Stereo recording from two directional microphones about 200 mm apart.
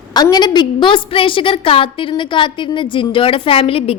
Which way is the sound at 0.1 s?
20° left (ahead or behind).